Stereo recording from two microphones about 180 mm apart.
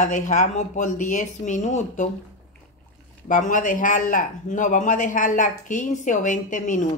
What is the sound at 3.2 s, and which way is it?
Speech, 45° left (ahead or behind).